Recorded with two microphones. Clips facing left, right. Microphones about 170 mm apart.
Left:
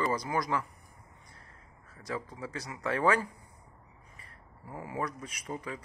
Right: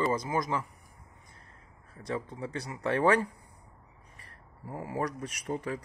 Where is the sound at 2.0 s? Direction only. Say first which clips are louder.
Right 3 dB; 25° right (ahead or behind).